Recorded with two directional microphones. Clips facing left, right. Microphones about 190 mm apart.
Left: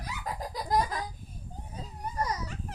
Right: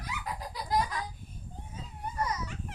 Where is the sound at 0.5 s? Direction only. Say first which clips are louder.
Left 2 dB; 35° left (ahead or behind).